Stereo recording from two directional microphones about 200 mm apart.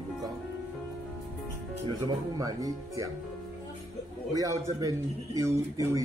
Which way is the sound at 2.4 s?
15° right (ahead or behind).